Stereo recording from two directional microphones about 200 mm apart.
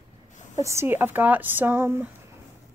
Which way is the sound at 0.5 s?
15° right (ahead or behind).